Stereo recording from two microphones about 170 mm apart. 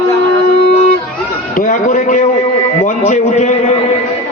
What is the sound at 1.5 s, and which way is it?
A man's voice, 50° left (ahead or behind).